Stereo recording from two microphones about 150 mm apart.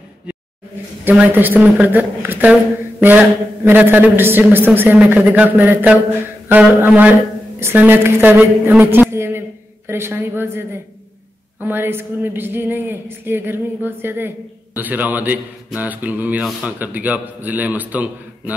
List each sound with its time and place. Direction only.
1.0 s a woman's voice: 10° right (ahead or behind)